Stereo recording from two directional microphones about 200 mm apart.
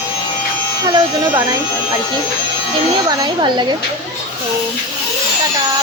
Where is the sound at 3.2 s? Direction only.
20° right (ahead or behind).